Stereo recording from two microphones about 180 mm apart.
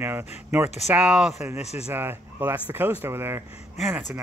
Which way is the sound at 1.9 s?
10° right (ahead or behind).